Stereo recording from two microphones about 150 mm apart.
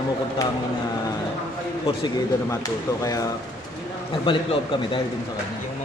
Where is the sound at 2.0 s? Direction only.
25° left (ahead or behind).